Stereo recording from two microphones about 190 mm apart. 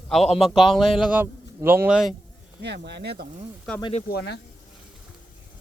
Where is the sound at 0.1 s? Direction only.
5° left (ahead or behind).